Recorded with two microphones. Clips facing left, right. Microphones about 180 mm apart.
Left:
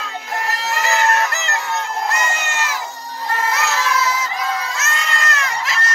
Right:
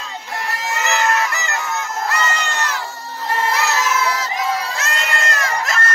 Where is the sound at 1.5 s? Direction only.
35° left (ahead or behind).